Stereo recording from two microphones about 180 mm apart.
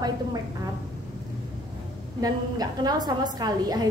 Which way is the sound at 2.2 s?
20° right (ahead or behind).